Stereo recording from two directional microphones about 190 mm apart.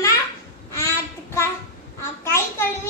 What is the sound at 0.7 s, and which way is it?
Child singing, 15° left (ahead or behind).